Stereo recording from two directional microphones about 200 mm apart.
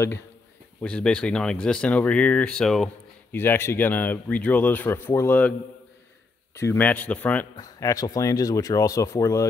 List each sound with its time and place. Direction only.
0.8 s speech: 5° left (ahead or behind)
6.5 s speech: 10° left (ahead or behind)
7.5 s speech: 20° left (ahead or behind)